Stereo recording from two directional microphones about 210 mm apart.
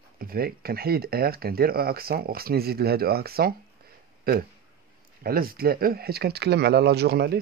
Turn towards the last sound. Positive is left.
turn(degrees=-50)  # may be behind; listen again after turning